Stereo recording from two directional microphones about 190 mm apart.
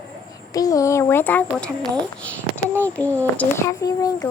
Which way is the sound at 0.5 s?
20° left (ahead or behind).